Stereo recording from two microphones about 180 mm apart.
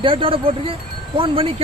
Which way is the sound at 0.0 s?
30° right (ahead or behind).